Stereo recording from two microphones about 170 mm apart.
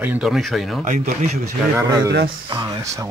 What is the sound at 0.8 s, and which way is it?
Speech, 45° right (ahead or behind).